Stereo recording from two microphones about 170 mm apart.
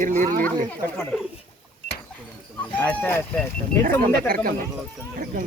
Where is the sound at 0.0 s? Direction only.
50° right (ahead or behind).